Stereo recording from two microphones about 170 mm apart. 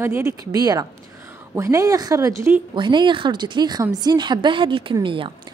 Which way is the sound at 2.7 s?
25° right (ahead or behind).